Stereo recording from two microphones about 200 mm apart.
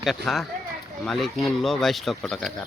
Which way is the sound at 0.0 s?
Centre (ahead or behind).